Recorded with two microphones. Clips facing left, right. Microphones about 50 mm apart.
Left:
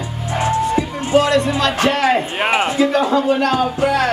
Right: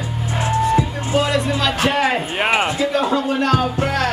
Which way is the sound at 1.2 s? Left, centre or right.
Centre.